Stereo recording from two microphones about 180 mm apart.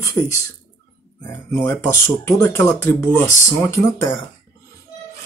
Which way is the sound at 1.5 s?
15° left (ahead or behind).